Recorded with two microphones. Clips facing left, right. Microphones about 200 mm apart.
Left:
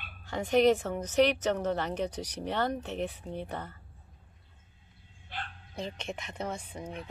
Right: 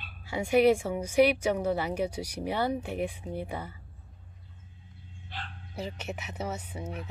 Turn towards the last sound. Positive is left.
turn(degrees=-5)  # may be behind; listen again after turning